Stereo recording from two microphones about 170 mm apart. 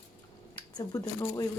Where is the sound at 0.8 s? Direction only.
20° left (ahead or behind).